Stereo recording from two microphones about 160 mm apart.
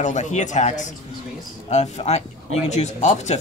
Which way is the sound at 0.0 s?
50° left (ahead or behind).